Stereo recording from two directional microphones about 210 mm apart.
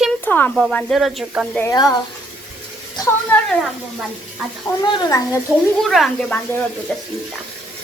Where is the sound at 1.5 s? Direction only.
15° left (ahead or behind).